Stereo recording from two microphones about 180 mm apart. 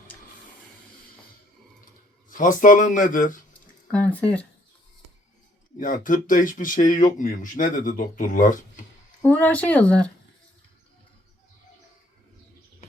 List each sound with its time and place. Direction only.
2.3 s speech: 45° left (ahead or behind)
3.9 s speech: 10° left (ahead or behind)
5.8 s speech: 50° left (ahead or behind)
9.2 s speech: 10° left (ahead or behind)